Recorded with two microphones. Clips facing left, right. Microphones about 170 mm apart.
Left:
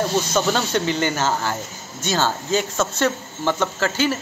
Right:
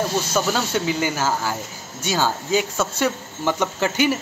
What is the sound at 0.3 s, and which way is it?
Speech, 5° right (ahead or behind).